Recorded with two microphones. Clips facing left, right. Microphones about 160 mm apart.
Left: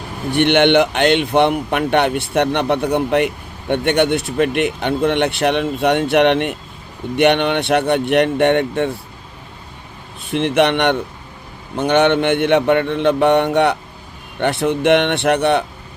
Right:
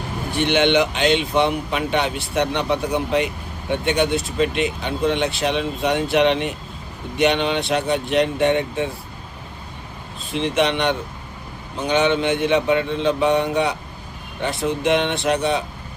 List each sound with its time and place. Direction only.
0.3 s speech: 60° left (ahead or behind)
10.3 s speech: 60° left (ahead or behind)